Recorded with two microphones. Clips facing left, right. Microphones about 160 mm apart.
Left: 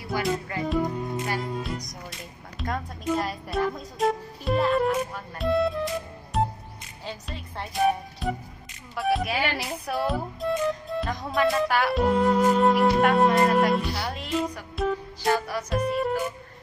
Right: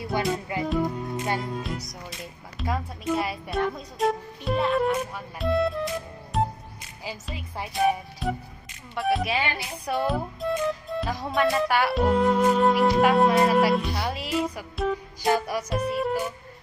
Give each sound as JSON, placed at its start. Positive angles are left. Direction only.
{"t": 0.1, "sound": "music", "side_deg": -25}
{"t": 0.7, "sound": "music", "side_deg": 0}
{"t": 1.6, "sound": "speech", "side_deg": 0}
{"t": 15.7, "sound": "music", "side_deg": 0}